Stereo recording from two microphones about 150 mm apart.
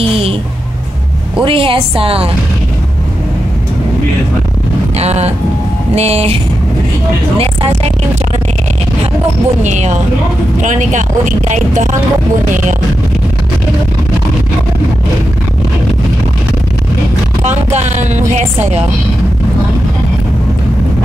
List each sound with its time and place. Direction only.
1.4 s a woman's voice: 35° right (ahead or behind)
4.9 s speech: 45° right (ahead or behind)
9.6 s speech: 50° right (ahead or behind)
17.7 s speech: 50° right (ahead or behind)